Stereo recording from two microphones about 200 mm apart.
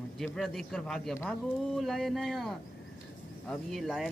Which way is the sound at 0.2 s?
Centre (ahead or behind).